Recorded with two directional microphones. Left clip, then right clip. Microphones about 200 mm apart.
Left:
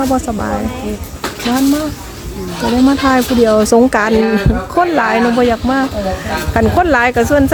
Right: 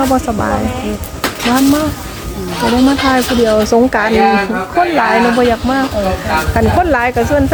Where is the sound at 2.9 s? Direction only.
15° left (ahead or behind).